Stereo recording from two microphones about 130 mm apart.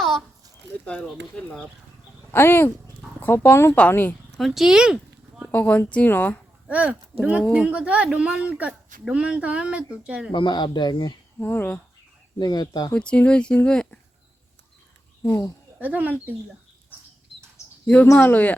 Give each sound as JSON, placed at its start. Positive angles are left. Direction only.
{"t": 2.3, "sound": "speech", "side_deg": 15}
{"t": 4.4, "sound": "speech", "side_deg": 0}
{"t": 5.5, "sound": "speech", "side_deg": 15}
{"t": 6.7, "sound": "speech", "side_deg": -10}
{"t": 10.3, "sound": "speech", "side_deg": 35}
{"t": 11.3, "sound": "speech", "side_deg": 15}
{"t": 12.4, "sound": "speech", "side_deg": 30}
{"t": 12.9, "sound": "speech", "side_deg": 10}
{"t": 15.2, "sound": "speech", "side_deg": 25}
{"t": 15.8, "sound": "speech", "side_deg": -10}
{"t": 17.8, "sound": "speech", "side_deg": 15}